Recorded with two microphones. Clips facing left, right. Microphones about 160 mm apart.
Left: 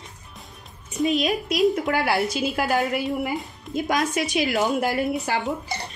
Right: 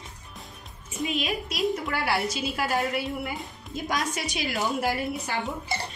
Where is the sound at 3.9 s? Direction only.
55° left (ahead or behind).